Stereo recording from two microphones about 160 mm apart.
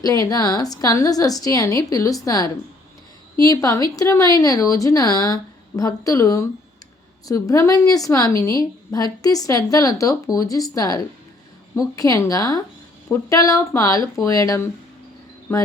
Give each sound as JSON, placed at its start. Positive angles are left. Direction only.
{"t": 0.0, "sound": "a woman's voice", "side_deg": 20}